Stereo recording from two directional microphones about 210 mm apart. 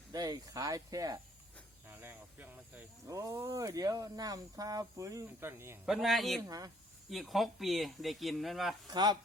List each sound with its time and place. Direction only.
0.1 s speech: 20° right (ahead or behind); by 8.7 s centre (ahead or behind)
8.9 s speech: 20° right (ahead or behind)